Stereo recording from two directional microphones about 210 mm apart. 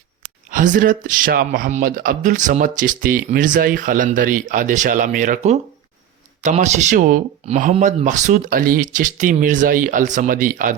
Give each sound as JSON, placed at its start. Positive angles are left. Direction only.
{"t": 0.5, "sound": "a man's voice", "side_deg": -40}